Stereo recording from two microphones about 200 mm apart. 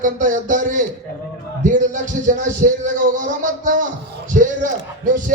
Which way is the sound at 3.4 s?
40° right (ahead or behind).